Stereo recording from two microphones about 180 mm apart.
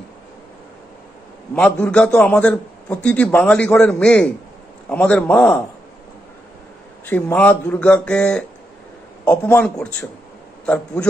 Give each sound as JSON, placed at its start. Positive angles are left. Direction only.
{"t": 1.5, "sound": "a man's voice", "side_deg": 5}
{"t": 7.1, "sound": "a man's voice", "side_deg": 10}